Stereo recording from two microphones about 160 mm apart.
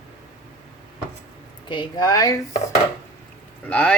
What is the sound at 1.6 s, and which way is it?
Speech, 30° left (ahead or behind).